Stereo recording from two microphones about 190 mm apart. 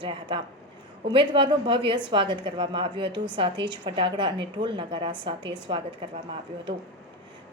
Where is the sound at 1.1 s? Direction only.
25° right (ahead or behind).